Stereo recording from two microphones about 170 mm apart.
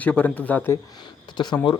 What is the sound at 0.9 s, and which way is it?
Speech, 25° left (ahead or behind).